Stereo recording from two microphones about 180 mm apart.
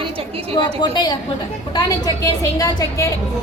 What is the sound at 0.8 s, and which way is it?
A woman's voice, 25° left (ahead or behind).